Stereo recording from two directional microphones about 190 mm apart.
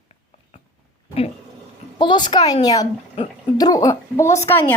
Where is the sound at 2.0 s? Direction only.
25° left (ahead or behind).